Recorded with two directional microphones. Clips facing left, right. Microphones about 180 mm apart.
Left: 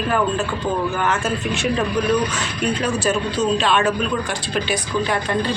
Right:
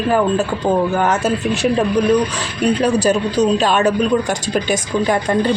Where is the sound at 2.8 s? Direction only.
35° right (ahead or behind).